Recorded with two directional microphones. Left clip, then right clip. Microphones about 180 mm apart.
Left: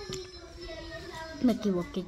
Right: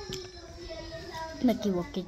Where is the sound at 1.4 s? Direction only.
15° left (ahead or behind).